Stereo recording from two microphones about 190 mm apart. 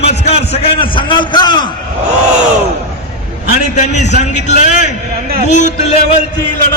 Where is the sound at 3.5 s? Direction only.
40° left (ahead or behind).